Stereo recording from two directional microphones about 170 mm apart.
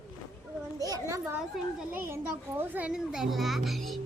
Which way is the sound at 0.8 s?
20° right (ahead or behind).